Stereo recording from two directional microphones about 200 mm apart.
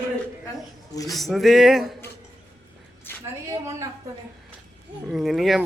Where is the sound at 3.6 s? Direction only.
15° right (ahead or behind).